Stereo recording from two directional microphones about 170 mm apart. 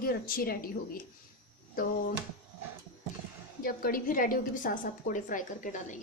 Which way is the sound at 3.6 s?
55° left (ahead or behind).